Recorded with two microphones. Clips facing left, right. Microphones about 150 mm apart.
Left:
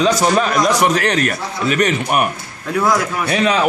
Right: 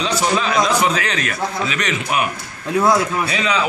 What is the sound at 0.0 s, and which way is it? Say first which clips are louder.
A man's voice: left 5 dB; 50° left (ahead or behind).